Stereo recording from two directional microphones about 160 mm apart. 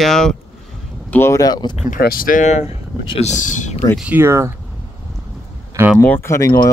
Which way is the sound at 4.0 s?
10° right (ahead or behind).